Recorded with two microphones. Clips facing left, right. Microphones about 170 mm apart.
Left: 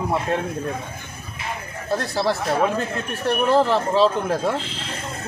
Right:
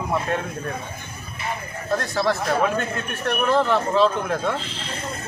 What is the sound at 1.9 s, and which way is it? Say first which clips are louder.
A man's voice: even; 30° left (ahead or behind).